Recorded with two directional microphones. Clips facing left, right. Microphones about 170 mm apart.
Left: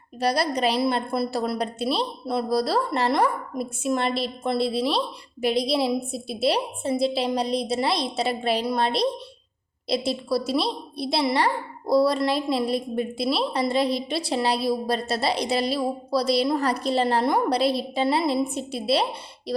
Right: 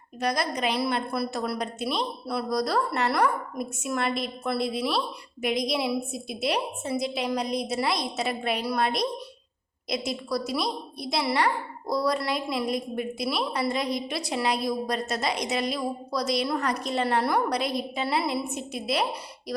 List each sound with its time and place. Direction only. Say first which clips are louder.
0.2 s a woman's voice: left 4 dB; 35° left (ahead or behind)
19.5 s music: left 4 dB; 30° left (ahead or behind)